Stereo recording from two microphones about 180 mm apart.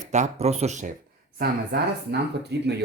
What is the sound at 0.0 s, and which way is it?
Speech, 40° right (ahead or behind).